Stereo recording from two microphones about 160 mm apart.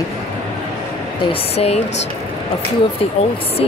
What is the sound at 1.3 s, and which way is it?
Speech, 40° left (ahead or behind).